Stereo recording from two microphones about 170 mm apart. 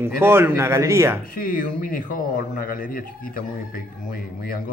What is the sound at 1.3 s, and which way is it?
A man's voice, 55° left (ahead or behind).